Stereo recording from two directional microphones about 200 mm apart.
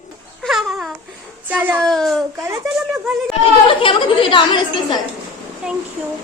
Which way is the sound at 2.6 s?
Centre (ahead or behind).